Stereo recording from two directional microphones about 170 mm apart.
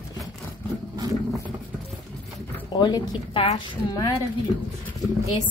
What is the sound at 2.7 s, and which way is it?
Speech, 25° left (ahead or behind).